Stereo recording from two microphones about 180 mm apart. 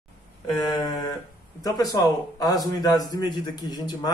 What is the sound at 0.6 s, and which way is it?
A man's voice, 25° left (ahead or behind).